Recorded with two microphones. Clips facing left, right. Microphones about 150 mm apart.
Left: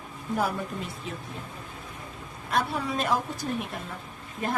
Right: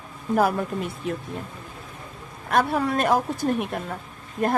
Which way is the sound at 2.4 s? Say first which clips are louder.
Right 6 dB; 60° right (ahead or behind).